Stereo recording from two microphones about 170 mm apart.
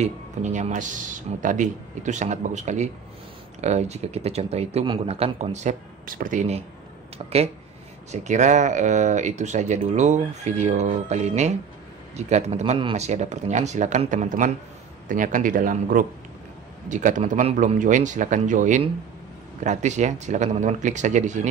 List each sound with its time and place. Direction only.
0.0 s speech: 45° right (ahead or behind)
8.1 s speech: 45° right (ahead or behind)